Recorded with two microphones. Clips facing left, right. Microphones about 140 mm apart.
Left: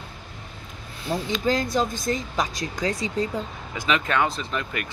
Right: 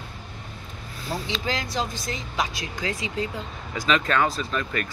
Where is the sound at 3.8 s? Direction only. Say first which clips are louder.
Right 1 dB; 15° left (ahead or behind).